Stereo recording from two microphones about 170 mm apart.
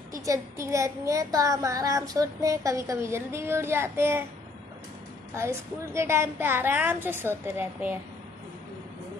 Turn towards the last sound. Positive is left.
turn(degrees=-10)  # may be behind; listen again after turning